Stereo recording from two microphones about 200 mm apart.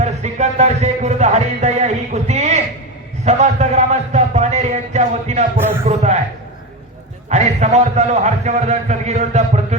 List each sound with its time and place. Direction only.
0.0 s music: 35° right (ahead or behind)
3.2 s a sound: 35° right (ahead or behind)
7.3 s a man's voice: 35° right (ahead or behind)